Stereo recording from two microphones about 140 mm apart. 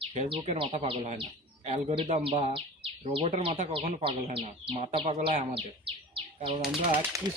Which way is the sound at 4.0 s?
45° right (ahead or behind).